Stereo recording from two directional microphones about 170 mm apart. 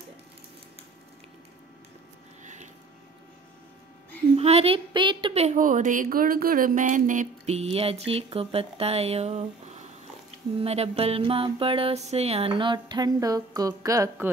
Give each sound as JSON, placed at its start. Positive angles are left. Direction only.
{"t": 2.4, "sound": "a sound", "side_deg": -45}
{"t": 4.4, "sound": "a woman's voice", "side_deg": -35}
{"t": 7.7, "sound": "music", "side_deg": -35}